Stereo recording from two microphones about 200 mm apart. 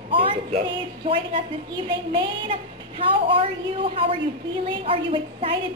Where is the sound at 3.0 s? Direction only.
25° right (ahead or behind).